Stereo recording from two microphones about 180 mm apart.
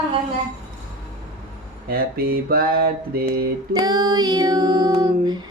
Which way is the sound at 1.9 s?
60° right (ahead or behind).